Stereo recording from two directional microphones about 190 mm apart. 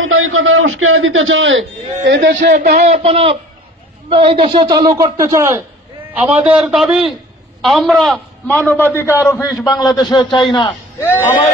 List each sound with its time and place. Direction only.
0.0 s speech: 90° right
2.0 s a man's voice: 65° right (ahead or behind)
2.8 s a man's voice: 35° right (ahead or behind); by 10.7 s 25° left (ahead or behind)
11.0 s a man's voice: 10° left (ahead or behind)